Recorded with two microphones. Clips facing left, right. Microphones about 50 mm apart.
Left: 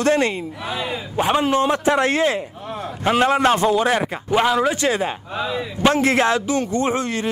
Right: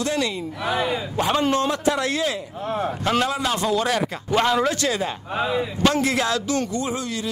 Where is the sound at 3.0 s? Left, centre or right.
Left.